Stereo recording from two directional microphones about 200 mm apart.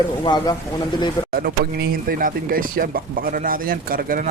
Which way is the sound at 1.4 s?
50° right (ahead or behind).